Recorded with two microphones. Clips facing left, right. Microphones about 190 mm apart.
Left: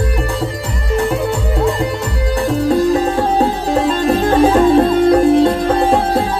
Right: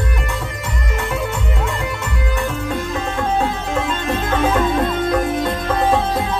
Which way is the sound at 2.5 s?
35° left (ahead or behind).